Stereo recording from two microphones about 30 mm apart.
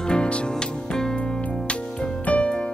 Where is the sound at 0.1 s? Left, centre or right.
Left.